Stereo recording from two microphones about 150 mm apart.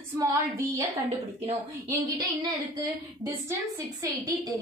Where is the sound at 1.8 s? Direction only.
25° right (ahead or behind).